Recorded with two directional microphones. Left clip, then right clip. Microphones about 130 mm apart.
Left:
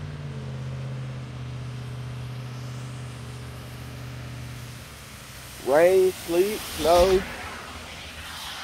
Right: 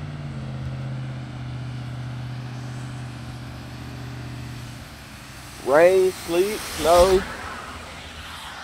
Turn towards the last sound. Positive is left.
turn(degrees=-40)  # may be behind; listen again after turning